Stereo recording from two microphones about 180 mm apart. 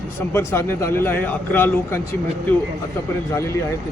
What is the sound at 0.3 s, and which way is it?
Speech, 15° left (ahead or behind).